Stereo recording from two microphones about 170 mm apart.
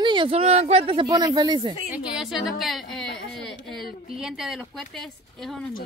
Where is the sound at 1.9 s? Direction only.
5° right (ahead or behind).